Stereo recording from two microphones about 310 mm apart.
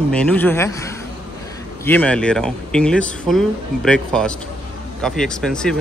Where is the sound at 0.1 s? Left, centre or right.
Centre.